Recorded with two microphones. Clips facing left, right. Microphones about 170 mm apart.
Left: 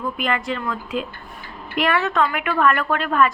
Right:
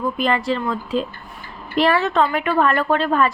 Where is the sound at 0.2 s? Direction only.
35° right (ahead or behind).